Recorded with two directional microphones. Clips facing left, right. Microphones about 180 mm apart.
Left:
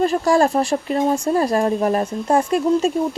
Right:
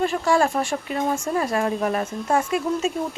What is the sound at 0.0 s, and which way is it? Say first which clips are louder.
Speech: left 4 dB; 35° left (ahead or behind).